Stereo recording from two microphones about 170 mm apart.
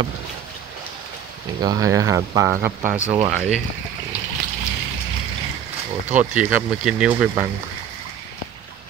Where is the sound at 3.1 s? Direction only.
40° right (ahead or behind).